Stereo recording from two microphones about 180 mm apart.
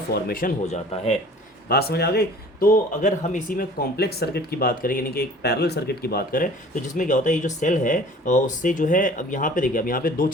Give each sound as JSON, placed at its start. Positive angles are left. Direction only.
{"t": 0.1, "sound": "a man's voice", "side_deg": 55}